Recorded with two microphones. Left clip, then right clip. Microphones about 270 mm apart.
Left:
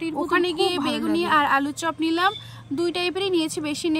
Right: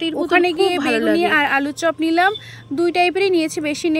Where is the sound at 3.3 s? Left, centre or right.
Centre.